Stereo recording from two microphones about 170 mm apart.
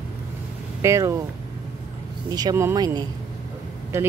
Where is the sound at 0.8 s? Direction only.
15° right (ahead or behind).